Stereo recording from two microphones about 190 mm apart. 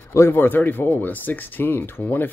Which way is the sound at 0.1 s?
15° left (ahead or behind).